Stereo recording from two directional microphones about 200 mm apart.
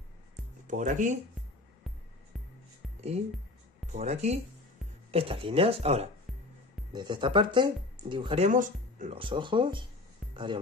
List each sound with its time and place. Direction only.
0.7 s speech: 40° right (ahead or behind)
3.9 s speech: 35° right (ahead or behind)
6.9 s speech: 20° right (ahead or behind)
8.5 s speech: 40° right (ahead or behind)
9.2 s speech: 25° right (ahead or behind)